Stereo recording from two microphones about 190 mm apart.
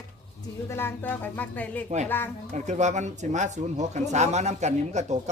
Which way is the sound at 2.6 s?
40° right (ahead or behind).